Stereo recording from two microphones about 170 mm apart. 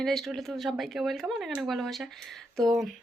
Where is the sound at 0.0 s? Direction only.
Centre (ahead or behind).